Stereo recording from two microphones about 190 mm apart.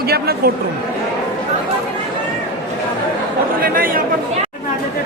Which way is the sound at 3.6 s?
50° right (ahead or behind).